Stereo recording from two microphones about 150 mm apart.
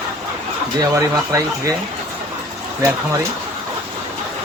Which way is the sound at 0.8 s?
20° right (ahead or behind).